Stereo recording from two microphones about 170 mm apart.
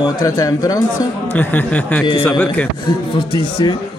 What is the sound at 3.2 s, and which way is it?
Speech, 30° left (ahead or behind).